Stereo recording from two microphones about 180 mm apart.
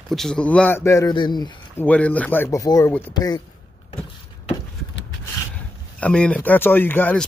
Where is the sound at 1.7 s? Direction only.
10° left (ahead or behind).